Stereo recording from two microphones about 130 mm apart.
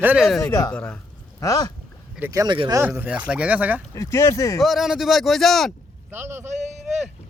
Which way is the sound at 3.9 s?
20° left (ahead or behind).